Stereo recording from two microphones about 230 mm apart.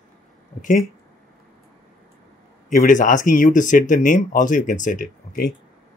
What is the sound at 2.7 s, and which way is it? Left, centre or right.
Speech, left.